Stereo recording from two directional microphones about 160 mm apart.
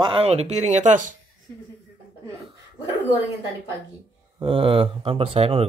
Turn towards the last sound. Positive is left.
turn(degrees=-40)  # may be behind; listen again after turning